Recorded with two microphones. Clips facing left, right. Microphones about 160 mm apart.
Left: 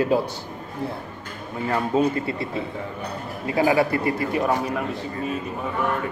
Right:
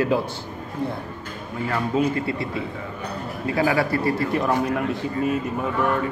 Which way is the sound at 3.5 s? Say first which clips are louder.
Left 2 dB; 20° left (ahead or behind).